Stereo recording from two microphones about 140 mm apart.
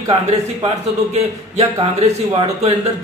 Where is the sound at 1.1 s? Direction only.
50° right (ahead or behind).